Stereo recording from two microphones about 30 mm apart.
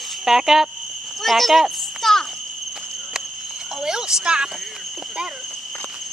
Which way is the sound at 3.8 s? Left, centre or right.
Right.